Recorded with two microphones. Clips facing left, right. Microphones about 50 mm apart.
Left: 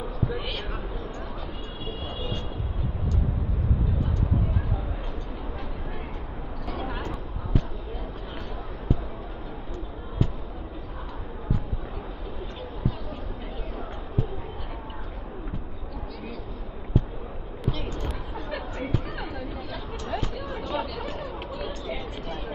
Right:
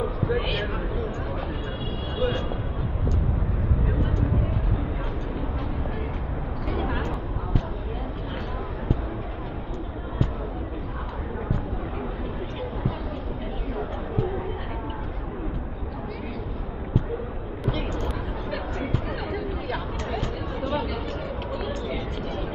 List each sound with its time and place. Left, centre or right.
0.3 s speech: right
18.0 s a sound: centre
20.6 s chatter: centre